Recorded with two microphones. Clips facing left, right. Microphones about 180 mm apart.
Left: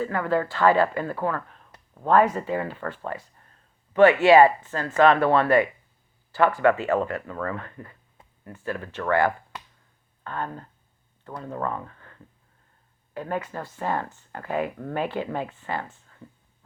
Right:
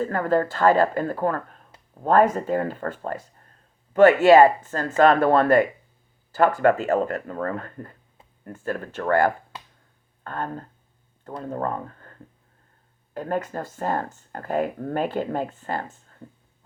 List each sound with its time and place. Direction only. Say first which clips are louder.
0.0 s speech: right 3 dB; 45° right (ahead or behind)